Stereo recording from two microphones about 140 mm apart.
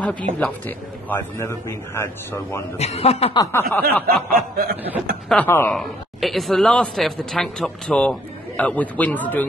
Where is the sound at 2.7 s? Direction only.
50° left (ahead or behind).